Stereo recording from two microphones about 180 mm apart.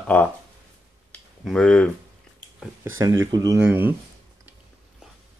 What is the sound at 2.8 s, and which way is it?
Speech, 15° right (ahead or behind).